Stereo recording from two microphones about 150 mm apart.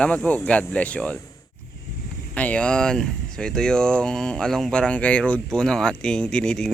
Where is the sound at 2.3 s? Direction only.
10° left (ahead or behind).